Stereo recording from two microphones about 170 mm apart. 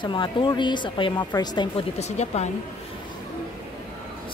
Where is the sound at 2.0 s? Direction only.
40° left (ahead or behind).